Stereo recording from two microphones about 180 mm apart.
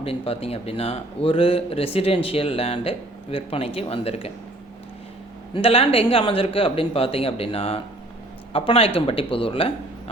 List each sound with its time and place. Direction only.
0.0 s speech: 35° left (ahead or behind)
5.5 s speech: 30° left (ahead or behind)